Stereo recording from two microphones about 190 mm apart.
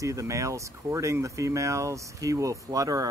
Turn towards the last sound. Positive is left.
turn(degrees=-20)  # may be behind; listen again after turning